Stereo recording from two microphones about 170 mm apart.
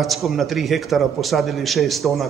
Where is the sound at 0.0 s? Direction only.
Centre (ahead or behind).